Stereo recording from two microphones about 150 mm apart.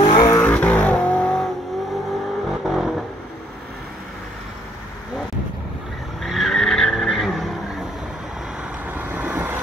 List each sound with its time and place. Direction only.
0.0 s vehicle: 30° left (ahead or behind)
0.3 s vehicle: 10° left (ahead or behind)
2.6 s vehicle: centre (ahead or behind)
6.2 s vehicle: centre (ahead or behind)
8.9 s vehicle: 10° right (ahead or behind)